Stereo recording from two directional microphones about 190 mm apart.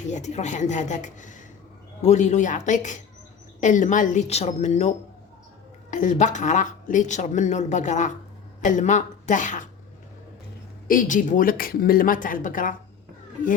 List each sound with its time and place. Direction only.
0.1 s speech: 40° left (ahead or behind)
10.8 s speech: 45° left (ahead or behind)